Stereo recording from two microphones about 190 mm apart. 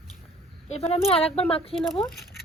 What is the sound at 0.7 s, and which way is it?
Speech, 35° left (ahead or behind).